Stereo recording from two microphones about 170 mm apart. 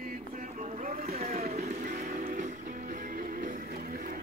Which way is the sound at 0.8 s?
40° right (ahead or behind).